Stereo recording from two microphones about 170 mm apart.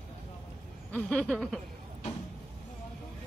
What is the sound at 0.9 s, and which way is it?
Speech, 5° left (ahead or behind).